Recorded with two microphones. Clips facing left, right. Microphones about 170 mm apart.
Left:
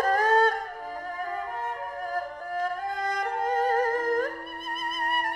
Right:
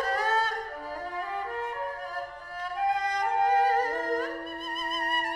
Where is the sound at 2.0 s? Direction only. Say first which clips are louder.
Left 5 dB; 50° left (ahead or behind).